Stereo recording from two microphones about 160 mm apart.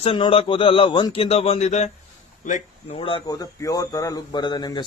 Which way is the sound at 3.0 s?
35° left (ahead or behind).